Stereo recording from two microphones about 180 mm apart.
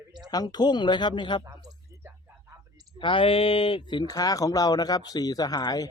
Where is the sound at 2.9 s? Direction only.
30° left (ahead or behind).